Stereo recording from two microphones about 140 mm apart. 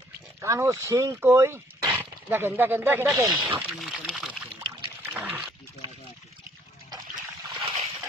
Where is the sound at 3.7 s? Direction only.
Centre (ahead or behind).